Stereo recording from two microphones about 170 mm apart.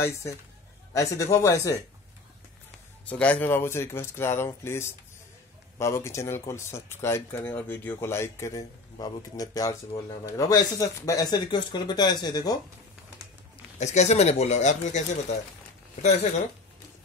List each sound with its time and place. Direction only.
0.9 s speech: 20° left (ahead or behind)
3.1 s speech: 10° left (ahead or behind); by 12.5 s 25° left (ahead or behind)
13.7 s speech: 40° left (ahead or behind)
16.0 s speech: 40° left (ahead or behind)